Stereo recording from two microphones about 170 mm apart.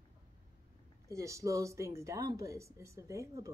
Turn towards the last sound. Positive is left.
turn(degrees=-20)  # may be behind; listen again after turning